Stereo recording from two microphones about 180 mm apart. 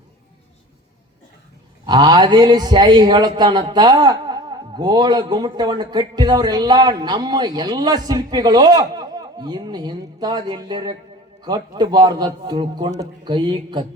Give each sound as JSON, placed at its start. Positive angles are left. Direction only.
{"t": 1.9, "sound": "a man's voice", "side_deg": -25}